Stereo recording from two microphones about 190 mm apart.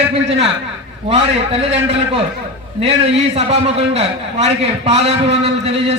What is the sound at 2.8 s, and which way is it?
A man's voice, 30° right (ahead or behind).